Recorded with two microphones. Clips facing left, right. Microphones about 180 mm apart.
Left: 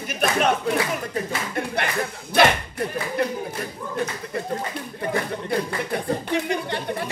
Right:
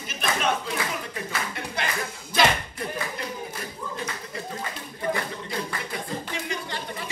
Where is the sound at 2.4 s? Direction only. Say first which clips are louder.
Left 5 dB; 60° left (ahead or behind).